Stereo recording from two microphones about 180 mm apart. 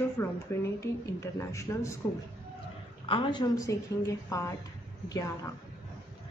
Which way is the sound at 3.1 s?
25° left (ahead or behind).